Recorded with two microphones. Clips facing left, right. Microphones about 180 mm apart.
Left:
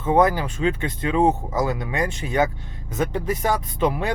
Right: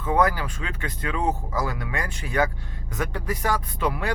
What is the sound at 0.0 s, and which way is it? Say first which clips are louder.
Speech: left 4 dB; 25° left (ahead or behind).